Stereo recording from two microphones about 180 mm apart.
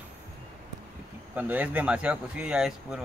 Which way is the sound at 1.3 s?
10° right (ahead or behind).